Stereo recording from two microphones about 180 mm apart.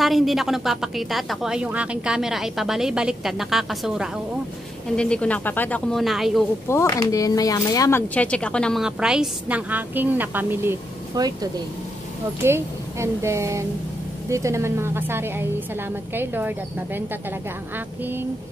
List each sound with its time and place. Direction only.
0.0 s speech: centre (ahead or behind)
6.7 s speech: 15° left (ahead or behind)
8.1 s a woman's voice: 5° left (ahead or behind); by 11.3 s 15° right (ahead or behind)
12.4 s a woman's voice: 15° right (ahead or behind)